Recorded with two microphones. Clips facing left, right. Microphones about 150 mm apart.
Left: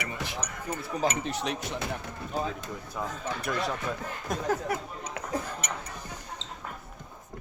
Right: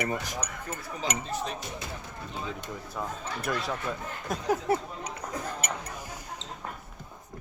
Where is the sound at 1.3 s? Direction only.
80° left.